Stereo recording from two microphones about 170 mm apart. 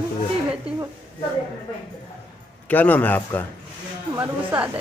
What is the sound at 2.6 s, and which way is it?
Speech, 10° left (ahead or behind).